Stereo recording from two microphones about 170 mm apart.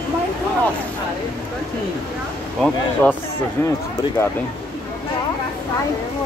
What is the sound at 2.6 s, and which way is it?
Speech, 10° left (ahead or behind).